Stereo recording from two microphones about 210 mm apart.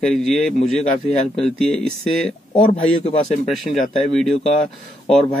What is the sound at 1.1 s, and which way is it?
Speech, 30° left (ahead or behind).